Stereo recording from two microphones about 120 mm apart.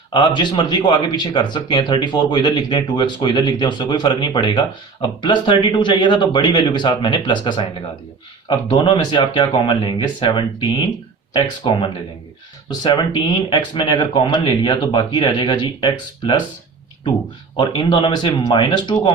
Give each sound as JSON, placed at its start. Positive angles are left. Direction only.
{"t": 0.1, "sound": "speech", "side_deg": 40}
{"t": 17.6, "sound": "speech", "side_deg": 40}